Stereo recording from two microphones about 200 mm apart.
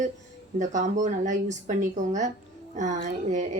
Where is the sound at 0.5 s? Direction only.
40° right (ahead or behind).